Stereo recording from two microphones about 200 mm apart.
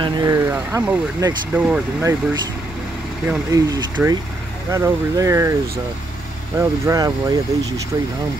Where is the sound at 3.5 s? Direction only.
20° right (ahead or behind).